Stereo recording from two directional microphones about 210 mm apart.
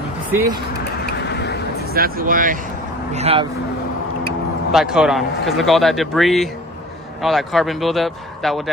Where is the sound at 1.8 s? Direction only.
45° right (ahead or behind); by 3.4 s 30° right (ahead or behind).